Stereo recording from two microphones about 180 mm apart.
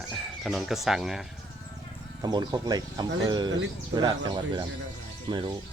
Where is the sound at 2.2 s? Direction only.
25° right (ahead or behind).